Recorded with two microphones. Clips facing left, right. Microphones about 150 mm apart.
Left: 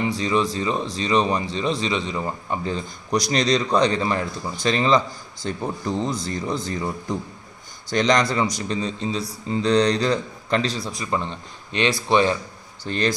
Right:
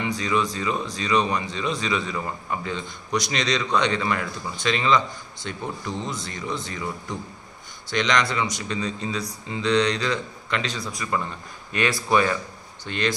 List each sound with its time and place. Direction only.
0.0 s speech: 30° left (ahead or behind)
12.8 s speech: 35° left (ahead or behind)